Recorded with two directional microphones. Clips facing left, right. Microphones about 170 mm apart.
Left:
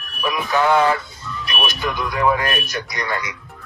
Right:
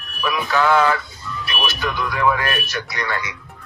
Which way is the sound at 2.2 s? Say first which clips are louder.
Left 1 dB; 15° left (ahead or behind).